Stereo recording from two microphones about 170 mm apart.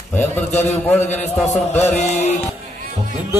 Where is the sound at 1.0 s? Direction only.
40° left (ahead or behind).